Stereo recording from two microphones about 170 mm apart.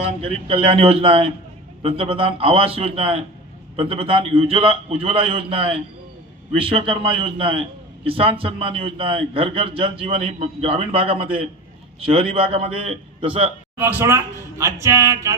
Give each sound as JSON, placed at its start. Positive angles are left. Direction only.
{"t": 0.0, "sound": "a man's voice", "side_deg": -35}
{"t": 13.7, "sound": "speech", "side_deg": -15}